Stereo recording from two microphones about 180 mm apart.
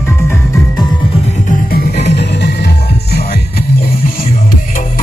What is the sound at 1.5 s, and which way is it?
Music, 60° left (ahead or behind).